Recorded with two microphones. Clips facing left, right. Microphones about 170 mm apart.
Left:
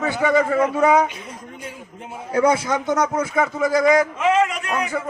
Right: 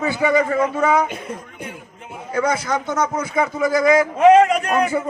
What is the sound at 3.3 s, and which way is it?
Speech, centre (ahead or behind).